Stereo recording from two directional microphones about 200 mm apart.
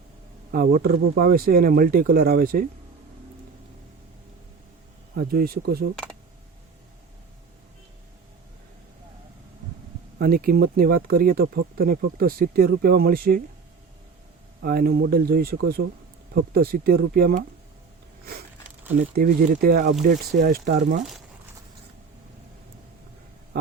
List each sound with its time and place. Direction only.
0.5 s speech: 50° right (ahead or behind)
5.1 s speech: 45° right (ahead or behind)
10.2 s speech: 45° right (ahead or behind)
14.6 s speech: 50° right (ahead or behind)
18.9 s speech: 45° right (ahead or behind)